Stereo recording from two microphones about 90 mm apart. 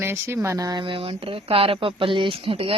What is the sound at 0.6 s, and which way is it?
Speech, 65° right (ahead or behind).